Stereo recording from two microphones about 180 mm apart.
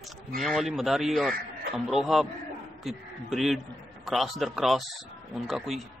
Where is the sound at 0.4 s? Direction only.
Centre (ahead or behind).